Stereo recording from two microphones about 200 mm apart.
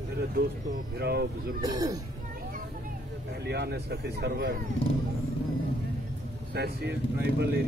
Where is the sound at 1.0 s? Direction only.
55° right (ahead or behind).